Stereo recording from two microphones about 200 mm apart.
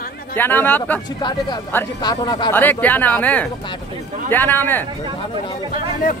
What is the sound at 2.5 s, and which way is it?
A man's voice, 10° left (ahead or behind).